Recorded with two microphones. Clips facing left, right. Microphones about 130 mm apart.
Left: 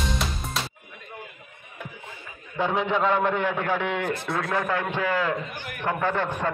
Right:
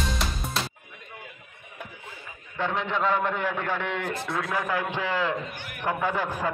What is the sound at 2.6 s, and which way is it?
A man's voice, 5° left (ahead or behind).